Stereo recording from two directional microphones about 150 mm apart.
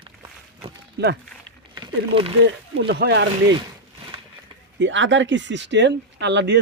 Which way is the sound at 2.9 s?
90° right.